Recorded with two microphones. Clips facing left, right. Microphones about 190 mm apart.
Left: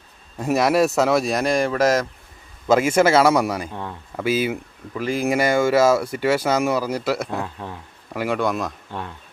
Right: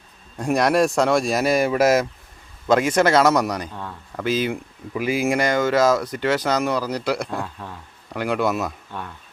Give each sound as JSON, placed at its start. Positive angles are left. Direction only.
{"t": 0.3, "sound": "speech", "side_deg": 5}
{"t": 2.6, "sound": "speech", "side_deg": 5}
{"t": 3.7, "sound": "speech", "side_deg": 20}
{"t": 4.2, "sound": "speech", "side_deg": 10}
{"t": 4.9, "sound": "speech", "side_deg": -5}
{"t": 7.4, "sound": "speech", "side_deg": 15}
{"t": 8.1, "sound": "speech", "side_deg": 5}
{"t": 8.9, "sound": "speech", "side_deg": 20}